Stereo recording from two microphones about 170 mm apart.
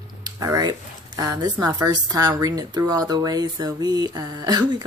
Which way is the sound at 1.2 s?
25° right (ahead or behind).